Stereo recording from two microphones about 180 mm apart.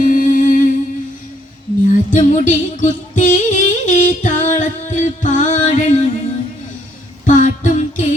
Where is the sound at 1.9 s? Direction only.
45° left (ahead or behind).